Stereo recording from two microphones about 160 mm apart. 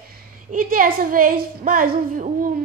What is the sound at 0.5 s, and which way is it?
A woman's voice, 60° right (ahead or behind).